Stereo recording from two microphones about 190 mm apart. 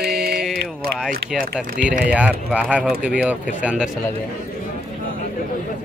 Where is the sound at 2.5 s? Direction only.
5° right (ahead or behind).